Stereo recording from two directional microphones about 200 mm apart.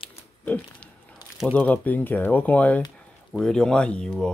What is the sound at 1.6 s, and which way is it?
Speech, 10° left (ahead or behind).